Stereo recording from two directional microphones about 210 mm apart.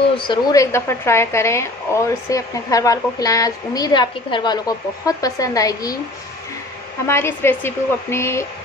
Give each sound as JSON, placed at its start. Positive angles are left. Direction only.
{"t": 0.3, "sound": "a woman's voice", "side_deg": 15}
{"t": 7.1, "sound": "a woman's voice", "side_deg": 10}